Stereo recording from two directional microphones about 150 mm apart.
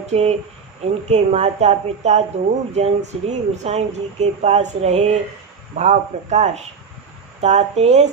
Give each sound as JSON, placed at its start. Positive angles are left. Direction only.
{"t": 0.0, "sound": "speech", "side_deg": -45}